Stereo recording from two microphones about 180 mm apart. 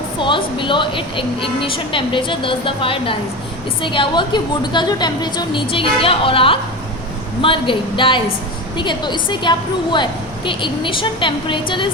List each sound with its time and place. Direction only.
0.2 s a woman's voice: 25° left (ahead or behind)